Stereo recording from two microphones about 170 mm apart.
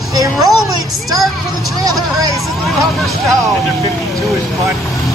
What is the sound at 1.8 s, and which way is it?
Speech, 20° right (ahead or behind).